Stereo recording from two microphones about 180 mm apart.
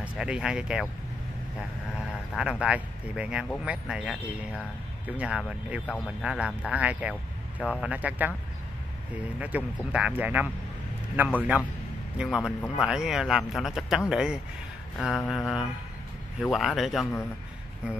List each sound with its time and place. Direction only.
0.0 s a man's voice: 5° right (ahead or behind)
2.3 s a man's voice: 5° right (ahead or behind)
12.2 s a man's voice: 5° right (ahead or behind)